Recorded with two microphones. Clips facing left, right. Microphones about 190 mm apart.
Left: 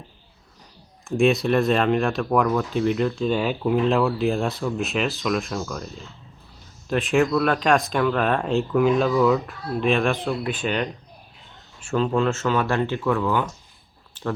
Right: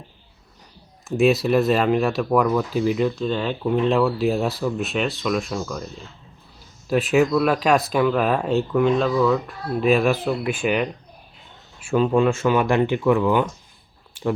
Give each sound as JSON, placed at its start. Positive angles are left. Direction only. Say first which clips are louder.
{"t": 1.0, "sound": "speech", "louder": "right 1 dB", "side_deg": -5}
{"t": 3.2, "sound": "speech", "louder": "left 1 dB", "side_deg": 10}
{"t": 9.8, "sound": "speech", "louder": "right 3 dB", "side_deg": -5}